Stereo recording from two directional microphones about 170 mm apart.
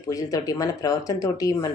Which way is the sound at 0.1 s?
20° left (ahead or behind).